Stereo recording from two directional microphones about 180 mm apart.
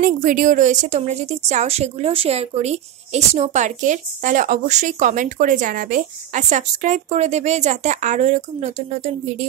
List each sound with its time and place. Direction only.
0.0 s a woman's voice: 50° right (ahead or behind)